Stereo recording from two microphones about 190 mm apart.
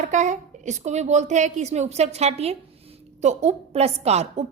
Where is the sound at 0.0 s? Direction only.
40° right (ahead or behind).